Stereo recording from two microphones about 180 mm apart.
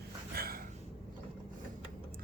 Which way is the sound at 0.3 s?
55° right (ahead or behind).